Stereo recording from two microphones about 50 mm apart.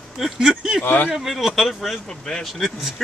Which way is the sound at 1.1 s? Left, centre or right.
Centre.